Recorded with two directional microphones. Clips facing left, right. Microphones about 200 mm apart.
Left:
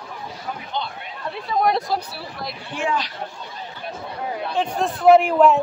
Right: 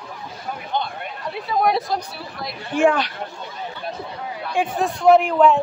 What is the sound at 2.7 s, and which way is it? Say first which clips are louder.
Speech: right 8 dB; 60° right (ahead or behind).